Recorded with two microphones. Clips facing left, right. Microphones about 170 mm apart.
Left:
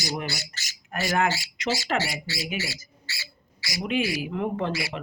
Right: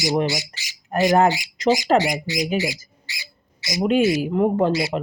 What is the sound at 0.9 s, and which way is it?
Speech, 35° right (ahead or behind).